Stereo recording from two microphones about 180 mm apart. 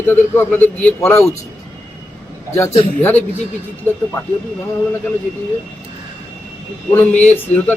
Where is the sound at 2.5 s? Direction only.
15° left (ahead or behind).